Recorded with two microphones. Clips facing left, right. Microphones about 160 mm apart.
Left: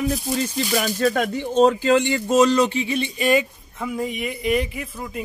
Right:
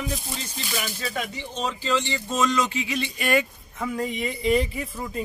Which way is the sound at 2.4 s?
35° left (ahead or behind).